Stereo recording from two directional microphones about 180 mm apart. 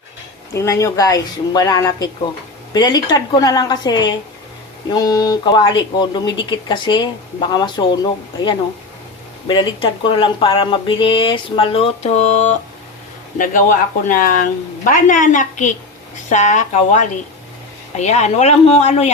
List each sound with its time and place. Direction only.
0.5 s speech: 15° left (ahead or behind); by 19.1 s 35° left (ahead or behind)